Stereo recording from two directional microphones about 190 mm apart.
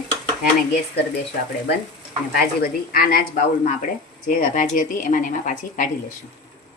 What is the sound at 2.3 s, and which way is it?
Speech, 50° left (ahead or behind).